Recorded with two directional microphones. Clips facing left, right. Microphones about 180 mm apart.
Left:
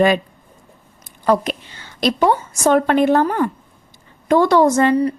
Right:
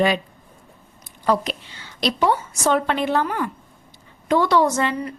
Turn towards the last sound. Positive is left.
turn(degrees=40)  # may be behind; listen again after turning